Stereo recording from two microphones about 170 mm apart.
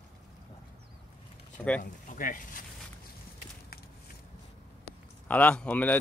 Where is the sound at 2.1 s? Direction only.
55° left (ahead or behind).